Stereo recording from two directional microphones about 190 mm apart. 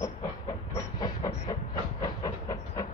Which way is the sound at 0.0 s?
15° left (ahead or behind).